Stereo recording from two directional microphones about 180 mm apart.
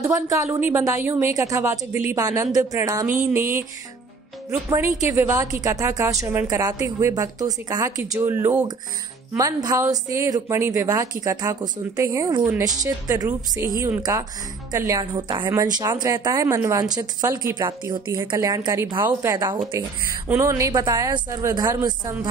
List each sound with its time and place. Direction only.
0.0 s a woman's voice: 15° right (ahead or behind)
4.5 s a woman's voice: 15° right (ahead or behind)